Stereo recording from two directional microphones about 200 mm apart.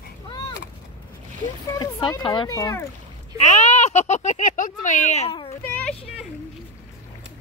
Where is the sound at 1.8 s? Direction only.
20° left (ahead or behind).